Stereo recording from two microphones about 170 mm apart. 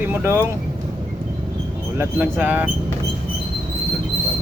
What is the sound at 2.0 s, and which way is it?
Speech, 10° right (ahead or behind).